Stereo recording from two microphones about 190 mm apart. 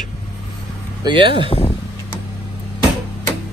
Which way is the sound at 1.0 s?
25° right (ahead or behind).